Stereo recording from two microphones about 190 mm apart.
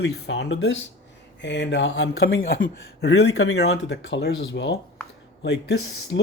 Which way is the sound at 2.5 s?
65° left (ahead or behind).